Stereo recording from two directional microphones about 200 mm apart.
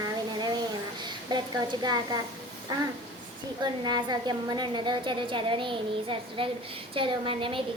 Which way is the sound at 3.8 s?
20° right (ahead or behind).